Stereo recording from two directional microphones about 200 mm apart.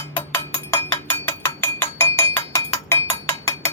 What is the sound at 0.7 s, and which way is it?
Cowbell, 15° left (ahead or behind).